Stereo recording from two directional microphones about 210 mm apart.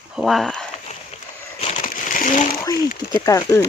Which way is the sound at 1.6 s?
30° left (ahead or behind).